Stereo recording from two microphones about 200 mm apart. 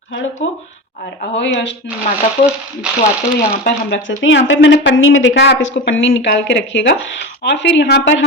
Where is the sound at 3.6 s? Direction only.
65° left (ahead or behind).